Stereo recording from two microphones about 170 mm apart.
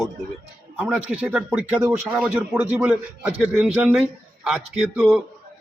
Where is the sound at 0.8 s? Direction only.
10° right (ahead or behind).